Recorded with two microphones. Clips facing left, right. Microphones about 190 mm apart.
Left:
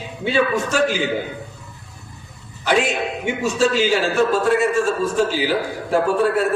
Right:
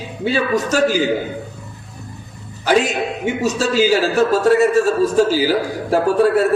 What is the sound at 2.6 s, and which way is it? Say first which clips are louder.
A man's voice: right 3 dB; 40° right (ahead or behind).